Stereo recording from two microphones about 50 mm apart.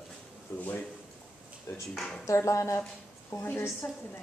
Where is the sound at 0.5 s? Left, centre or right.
Left.